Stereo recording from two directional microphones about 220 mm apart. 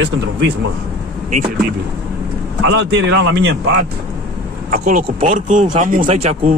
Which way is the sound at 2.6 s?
50° right (ahead or behind).